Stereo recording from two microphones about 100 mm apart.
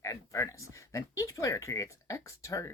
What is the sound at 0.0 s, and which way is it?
Speech, 30° left (ahead or behind).